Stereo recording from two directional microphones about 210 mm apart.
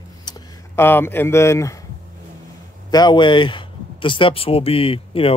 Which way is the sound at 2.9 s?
20° left (ahead or behind).